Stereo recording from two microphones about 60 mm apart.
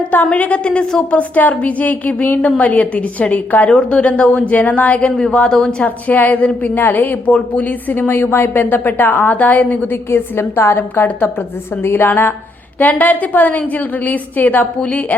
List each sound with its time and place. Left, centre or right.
0.3 s a woman's voice: left
3.8 s a woman's voice: centre
5.0 s speech: centre
5.8 s a woman's voice: left
10.1 s a woman's voice: left